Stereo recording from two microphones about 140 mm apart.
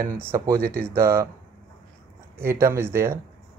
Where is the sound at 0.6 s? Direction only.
90° right.